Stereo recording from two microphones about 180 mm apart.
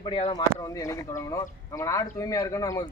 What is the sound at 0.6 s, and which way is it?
Speech, 20° left (ahead or behind).